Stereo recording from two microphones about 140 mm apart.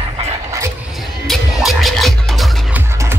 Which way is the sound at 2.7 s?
15° right (ahead or behind).